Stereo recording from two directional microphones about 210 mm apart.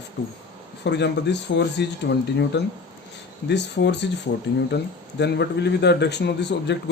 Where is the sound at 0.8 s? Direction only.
55° left (ahead or behind).